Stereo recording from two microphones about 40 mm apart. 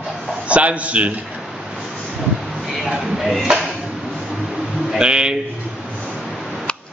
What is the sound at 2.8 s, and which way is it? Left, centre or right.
Speech, centre.